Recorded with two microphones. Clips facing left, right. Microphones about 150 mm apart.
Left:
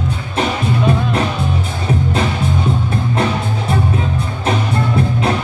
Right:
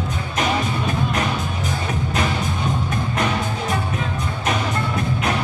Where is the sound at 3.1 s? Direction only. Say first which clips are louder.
Left 4 dB; 30° left (ahead or behind).